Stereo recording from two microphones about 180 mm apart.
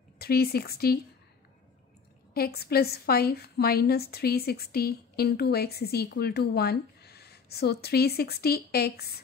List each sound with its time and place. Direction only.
0.2 s a woman's voice: 60° left (ahead or behind)
2.3 s a woman's voice: 60° left (ahead or behind)